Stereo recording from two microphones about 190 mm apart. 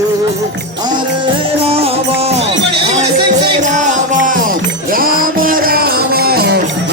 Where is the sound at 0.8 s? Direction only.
25° right (ahead or behind).